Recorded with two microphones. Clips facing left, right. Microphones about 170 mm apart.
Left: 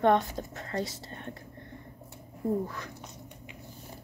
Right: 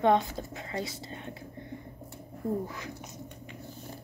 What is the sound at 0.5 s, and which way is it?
Whispering, 10° right (ahead or behind).